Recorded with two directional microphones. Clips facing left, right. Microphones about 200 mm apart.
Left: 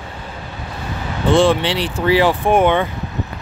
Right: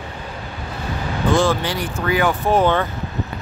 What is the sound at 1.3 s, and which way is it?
Speech, 25° left (ahead or behind).